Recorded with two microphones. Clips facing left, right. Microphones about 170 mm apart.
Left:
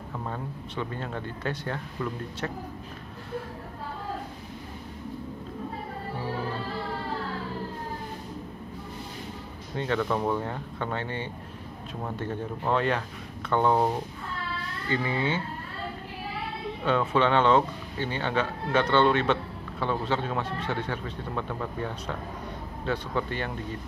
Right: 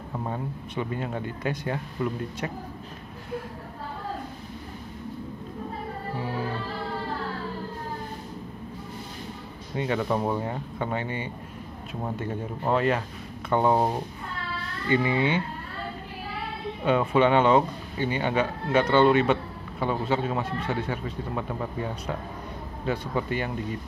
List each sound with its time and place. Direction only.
0.1 s speech: 20° right (ahead or behind)
9.8 s speech: 15° right (ahead or behind)
14.9 s speech: 15° right (ahead or behind)
16.8 s speech: 10° right (ahead or behind)